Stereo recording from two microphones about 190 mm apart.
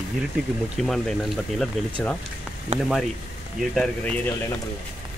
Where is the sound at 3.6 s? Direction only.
5° left (ahead or behind).